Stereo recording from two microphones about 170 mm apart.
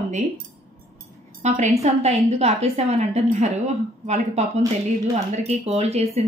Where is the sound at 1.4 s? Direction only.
45° right (ahead or behind).